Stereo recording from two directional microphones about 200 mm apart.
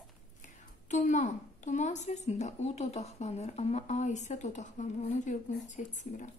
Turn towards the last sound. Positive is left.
turn(degrees=40)  # may be behind; listen again after turning